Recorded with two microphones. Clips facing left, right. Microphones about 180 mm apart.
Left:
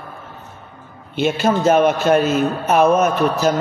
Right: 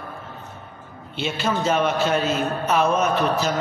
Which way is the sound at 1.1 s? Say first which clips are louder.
Left 7 dB; 50° left (ahead or behind).